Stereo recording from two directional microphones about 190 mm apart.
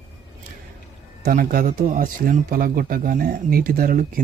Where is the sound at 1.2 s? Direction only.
50° right (ahead or behind).